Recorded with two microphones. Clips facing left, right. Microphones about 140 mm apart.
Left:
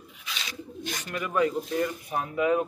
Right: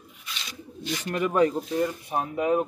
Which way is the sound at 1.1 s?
35° right (ahead or behind).